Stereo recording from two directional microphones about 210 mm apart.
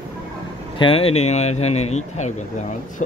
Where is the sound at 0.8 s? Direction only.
25° left (ahead or behind).